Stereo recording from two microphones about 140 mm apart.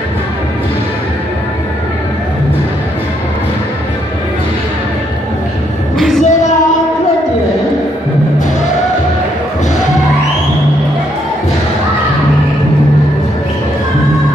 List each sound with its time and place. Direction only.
5.9 s music: centre (ahead or behind)